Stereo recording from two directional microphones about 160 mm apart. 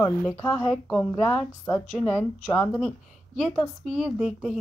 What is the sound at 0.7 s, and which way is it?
Speech, 5° left (ahead or behind).